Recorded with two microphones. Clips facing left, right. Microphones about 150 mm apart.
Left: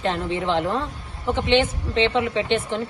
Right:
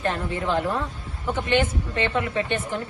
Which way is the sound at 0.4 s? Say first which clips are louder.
Left 1 dB; 20° left (ahead or behind).